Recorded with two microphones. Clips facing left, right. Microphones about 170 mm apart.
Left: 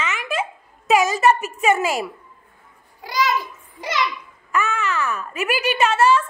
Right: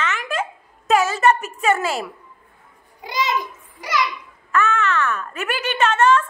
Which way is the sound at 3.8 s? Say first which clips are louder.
Right 1 dB; 25° left (ahead or behind).